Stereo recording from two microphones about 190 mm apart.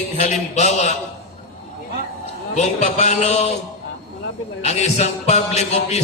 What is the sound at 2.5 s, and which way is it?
A man's voice, 35° left (ahead or behind).